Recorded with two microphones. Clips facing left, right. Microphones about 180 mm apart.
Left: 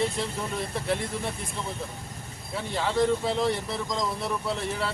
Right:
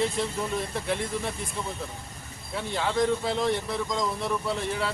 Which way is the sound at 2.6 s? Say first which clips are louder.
Left 1 dB; centre (ahead or behind).